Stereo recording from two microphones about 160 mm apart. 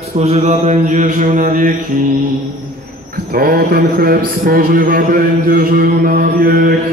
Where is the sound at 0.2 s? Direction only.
45° right (ahead or behind).